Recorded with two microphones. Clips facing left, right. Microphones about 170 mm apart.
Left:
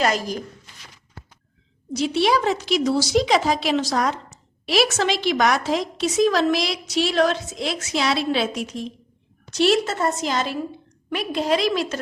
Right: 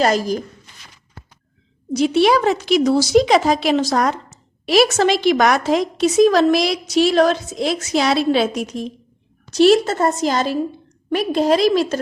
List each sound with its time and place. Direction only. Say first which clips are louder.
0.0 s a woman's voice: right 5 dB; 35° right (ahead or behind)
1.9 s a woman's voice: right 5 dB; 50° right (ahead or behind)